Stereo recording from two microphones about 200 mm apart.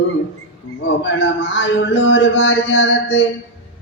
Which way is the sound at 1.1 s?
70° left (ahead or behind).